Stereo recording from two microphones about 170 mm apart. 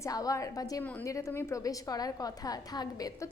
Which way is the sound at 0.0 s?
20° left (ahead or behind).